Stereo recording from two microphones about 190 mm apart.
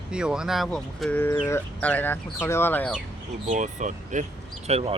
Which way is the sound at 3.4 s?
40° right (ahead or behind).